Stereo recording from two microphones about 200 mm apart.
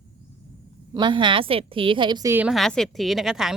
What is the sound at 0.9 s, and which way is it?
A woman's voice, 25° right (ahead or behind).